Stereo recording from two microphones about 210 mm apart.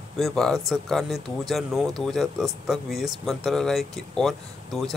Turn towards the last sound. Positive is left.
turn(degrees=0)  # may be behind; listen again after turning